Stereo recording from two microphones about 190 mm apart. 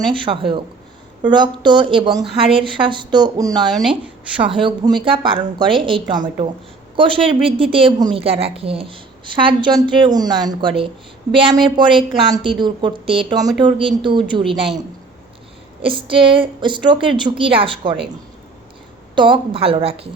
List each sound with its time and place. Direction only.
0.1 s a woman's voice: 25° right (ahead or behind)
15.8 s a woman's voice: 25° right (ahead or behind)
19.1 s a woman's voice: 25° right (ahead or behind)